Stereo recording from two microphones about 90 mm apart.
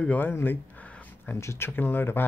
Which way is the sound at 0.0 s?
20° left (ahead or behind).